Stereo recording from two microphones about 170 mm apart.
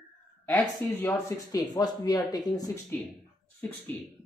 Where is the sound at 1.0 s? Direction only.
15° left (ahead or behind).